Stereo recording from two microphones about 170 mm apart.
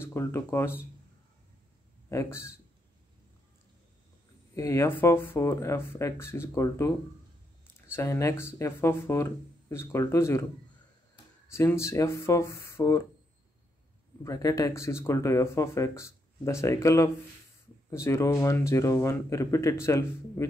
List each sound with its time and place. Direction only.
0.0 s speech: 15° left (ahead or behind)
2.0 s speech: 15° left (ahead or behind)
4.6 s speech: 15° left (ahead or behind)
7.9 s speech: 15° left (ahead or behind)
11.5 s speech: 15° left (ahead or behind)
14.2 s speech: 20° left (ahead or behind)